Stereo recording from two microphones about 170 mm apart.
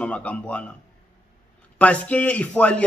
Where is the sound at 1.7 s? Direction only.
10° left (ahead or behind).